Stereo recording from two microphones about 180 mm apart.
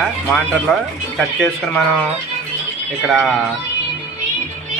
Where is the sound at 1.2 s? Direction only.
Centre (ahead or behind).